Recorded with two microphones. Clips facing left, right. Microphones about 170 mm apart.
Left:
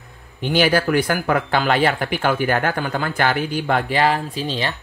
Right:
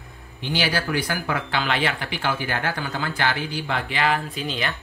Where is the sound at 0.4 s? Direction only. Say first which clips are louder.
Left 8 dB; 50° left (ahead or behind); by 4.7 s 30° left (ahead or behind).